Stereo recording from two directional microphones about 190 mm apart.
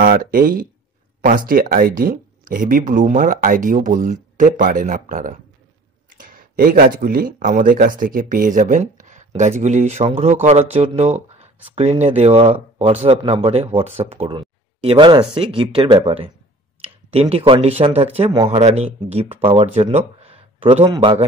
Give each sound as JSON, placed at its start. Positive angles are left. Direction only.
{"t": 0.0, "sound": "speech", "side_deg": -50}